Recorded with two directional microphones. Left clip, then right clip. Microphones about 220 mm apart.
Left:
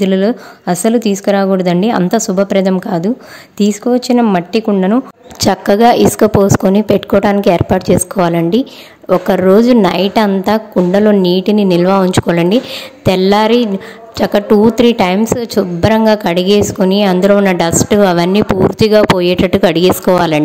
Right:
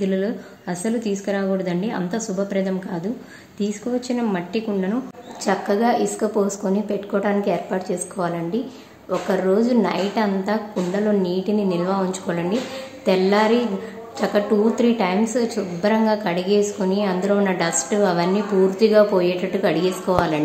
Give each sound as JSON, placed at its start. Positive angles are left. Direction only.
{"t": 0.0, "sound": "a woman's voice", "side_deg": 50}